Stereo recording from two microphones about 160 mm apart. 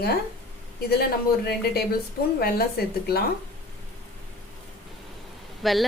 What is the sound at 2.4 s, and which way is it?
Speech, 75° left (ahead or behind).